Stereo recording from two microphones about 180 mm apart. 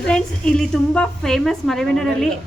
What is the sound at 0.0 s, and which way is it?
A woman's voice, 5° left (ahead or behind).